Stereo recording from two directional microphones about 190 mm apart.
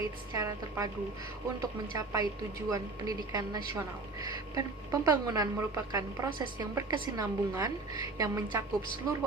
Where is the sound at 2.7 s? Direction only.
20° right (ahead or behind).